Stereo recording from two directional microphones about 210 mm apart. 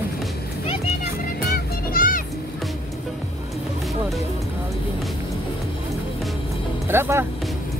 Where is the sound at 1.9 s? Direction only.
40° left (ahead or behind).